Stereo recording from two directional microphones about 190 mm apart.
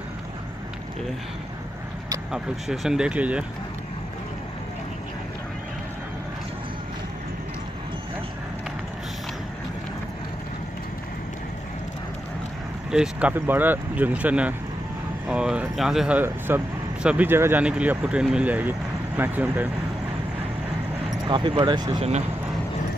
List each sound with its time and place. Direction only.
2.3 s speech: 5° right (ahead or behind)
12.9 s speech: 5° right (ahead or behind)
21.3 s speech: 25° right (ahead or behind)